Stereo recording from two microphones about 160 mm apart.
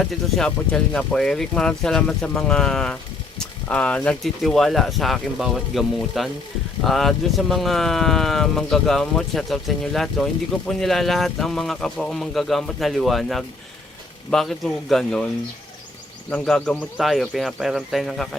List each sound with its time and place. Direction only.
0.0 s speech: 5° left (ahead or behind)
16.3 s speech: 5° left (ahead or behind)